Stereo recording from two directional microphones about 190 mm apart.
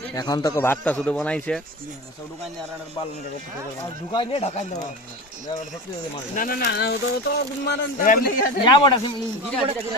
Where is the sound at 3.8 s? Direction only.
25° left (ahead or behind).